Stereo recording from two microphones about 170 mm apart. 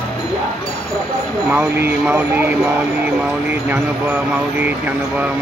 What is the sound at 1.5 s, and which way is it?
Speech, 10° right (ahead or behind).